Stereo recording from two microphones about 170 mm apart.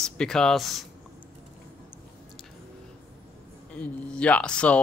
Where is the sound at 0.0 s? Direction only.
5° left (ahead or behind).